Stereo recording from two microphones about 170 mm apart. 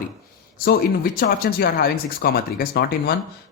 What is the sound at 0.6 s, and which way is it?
Speech, 60° left (ahead or behind).